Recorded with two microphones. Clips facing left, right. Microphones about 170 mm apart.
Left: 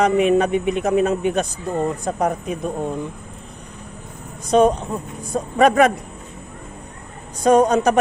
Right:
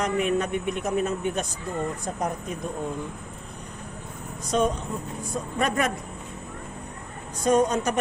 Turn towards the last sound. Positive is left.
turn(degrees=70)  # may be behind; listen again after turning